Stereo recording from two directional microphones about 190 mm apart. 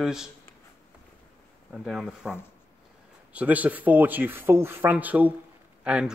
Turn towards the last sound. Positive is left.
turn(degrees=-5)  # may be behind; listen again after turning